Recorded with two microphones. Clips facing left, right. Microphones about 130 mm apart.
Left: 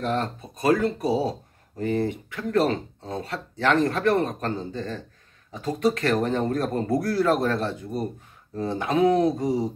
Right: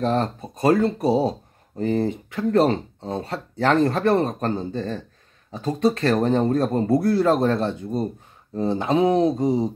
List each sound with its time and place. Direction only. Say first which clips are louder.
0.0 s speech: right 4 dB; 30° right (ahead or behind)